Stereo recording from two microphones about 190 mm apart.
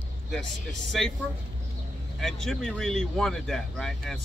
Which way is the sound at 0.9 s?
Centre (ahead or behind).